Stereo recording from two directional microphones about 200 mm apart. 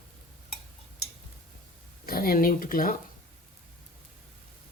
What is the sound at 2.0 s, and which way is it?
Speech, 45° left (ahead or behind).